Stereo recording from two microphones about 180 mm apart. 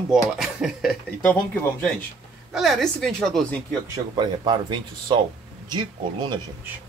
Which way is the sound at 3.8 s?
20° right (ahead or behind).